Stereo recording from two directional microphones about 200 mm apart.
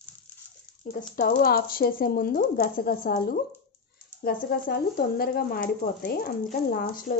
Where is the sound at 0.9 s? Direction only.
45° left (ahead or behind).